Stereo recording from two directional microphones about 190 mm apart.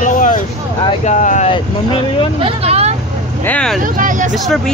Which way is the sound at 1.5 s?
25° left (ahead or behind).